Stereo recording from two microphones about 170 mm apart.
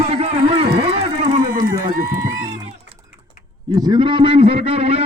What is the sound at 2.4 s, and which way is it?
Music, 40° right (ahead or behind).